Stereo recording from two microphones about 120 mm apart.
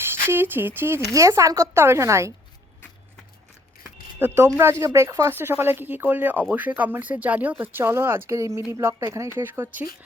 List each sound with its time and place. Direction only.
0.0 s speech: 20° right (ahead or behind)
3.8 s speech: 25° right (ahead or behind)